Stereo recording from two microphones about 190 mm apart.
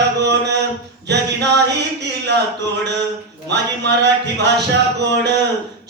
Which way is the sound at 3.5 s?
65° right (ahead or behind).